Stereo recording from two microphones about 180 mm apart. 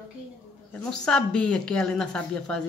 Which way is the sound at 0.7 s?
5° left (ahead or behind).